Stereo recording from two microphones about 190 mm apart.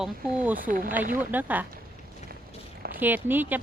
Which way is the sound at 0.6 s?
45° right (ahead or behind).